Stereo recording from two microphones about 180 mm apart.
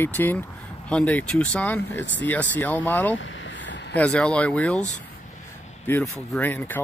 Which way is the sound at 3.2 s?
90° left.